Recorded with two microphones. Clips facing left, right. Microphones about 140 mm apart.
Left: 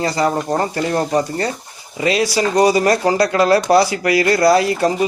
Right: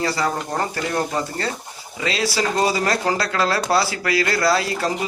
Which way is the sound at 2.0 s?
15° left (ahead or behind).